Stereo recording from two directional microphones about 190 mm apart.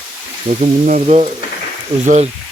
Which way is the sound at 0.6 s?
40° right (ahead or behind).